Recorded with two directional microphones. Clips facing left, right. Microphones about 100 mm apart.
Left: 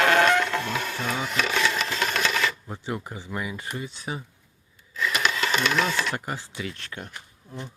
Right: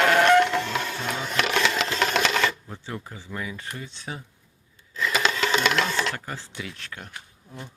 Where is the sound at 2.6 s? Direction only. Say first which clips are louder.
Left 4 dB; 15° left (ahead or behind).